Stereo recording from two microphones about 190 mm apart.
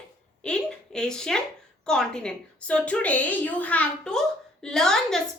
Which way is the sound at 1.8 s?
5° left (ahead or behind).